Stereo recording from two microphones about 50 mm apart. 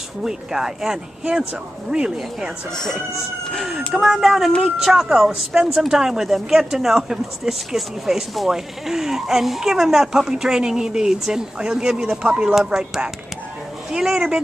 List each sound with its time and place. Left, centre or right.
0.2 s speech: centre
2.7 s speech: centre
3.5 s speech: centre